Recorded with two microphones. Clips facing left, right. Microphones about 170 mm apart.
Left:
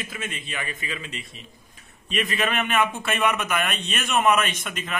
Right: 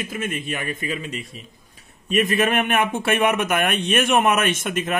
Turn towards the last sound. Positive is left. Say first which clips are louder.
# right 8 dB
turn(degrees=-45)  # may be behind; listen again after turning